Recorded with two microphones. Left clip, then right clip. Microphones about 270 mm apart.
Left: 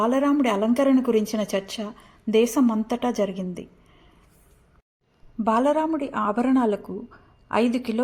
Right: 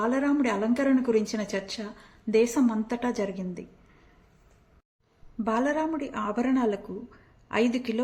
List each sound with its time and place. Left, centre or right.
0.0 s a woman's voice: centre
5.4 s a woman's voice: centre